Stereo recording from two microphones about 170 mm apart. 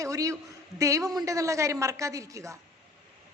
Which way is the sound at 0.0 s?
20° right (ahead or behind).